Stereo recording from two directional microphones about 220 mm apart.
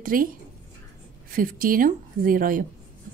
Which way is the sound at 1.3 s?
40° right (ahead or behind).